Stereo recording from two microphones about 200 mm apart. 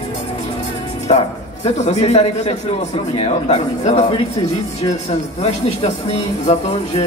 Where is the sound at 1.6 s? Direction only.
35° left (ahead or behind).